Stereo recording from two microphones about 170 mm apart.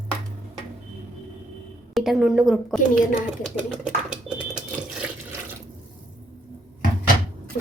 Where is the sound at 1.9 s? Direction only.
Centre (ahead or behind).